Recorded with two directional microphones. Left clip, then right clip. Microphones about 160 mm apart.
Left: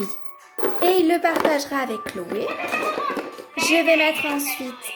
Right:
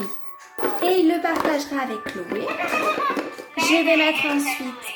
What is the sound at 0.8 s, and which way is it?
Speech, 40° left (ahead or behind).